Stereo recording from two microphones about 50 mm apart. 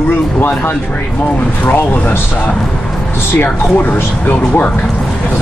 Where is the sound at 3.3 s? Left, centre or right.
Left.